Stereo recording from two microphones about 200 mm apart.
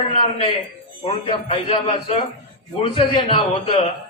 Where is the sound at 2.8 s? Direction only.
25° left (ahead or behind).